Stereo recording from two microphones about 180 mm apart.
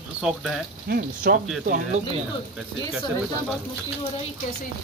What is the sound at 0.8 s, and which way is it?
Speech, 55° right (ahead or behind).